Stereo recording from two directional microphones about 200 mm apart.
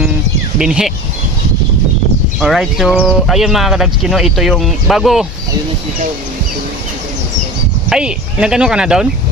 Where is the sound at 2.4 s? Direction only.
Centre (ahead or behind).